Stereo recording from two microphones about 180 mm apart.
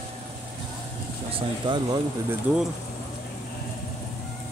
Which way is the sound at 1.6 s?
25° right (ahead or behind).